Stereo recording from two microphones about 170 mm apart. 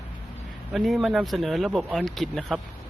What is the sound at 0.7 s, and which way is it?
Speech, centre (ahead or behind).